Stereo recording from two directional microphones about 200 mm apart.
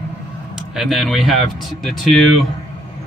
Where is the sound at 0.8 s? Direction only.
Centre (ahead or behind).